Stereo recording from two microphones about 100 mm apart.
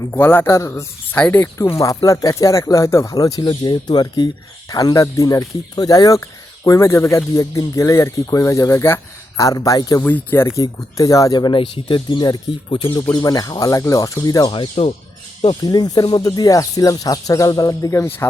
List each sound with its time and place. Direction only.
0.1 s speech: 20° left (ahead or behind)
1.7 s speech: 35° left (ahead or behind)
10.0 s speech: 20° left (ahead or behind)
10.6 s speech: 35° left (ahead or behind); by 13.1 s 50° left (ahead or behind)
13.1 s speech: 40° left (ahead or behind)
14.5 s speech: 65° left (ahead or behind)
15.6 s speech: 40° left (ahead or behind)